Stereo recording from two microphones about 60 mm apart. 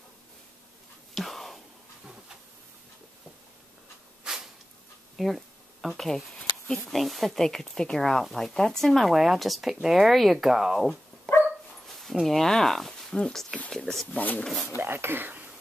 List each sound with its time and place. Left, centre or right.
1.1 s whispering: centre
4.2 s a sound: centre
5.1 s speech: centre
11.3 s dog: centre
12.0 s speech: centre
14.1 s speech: left
14.8 s speech: right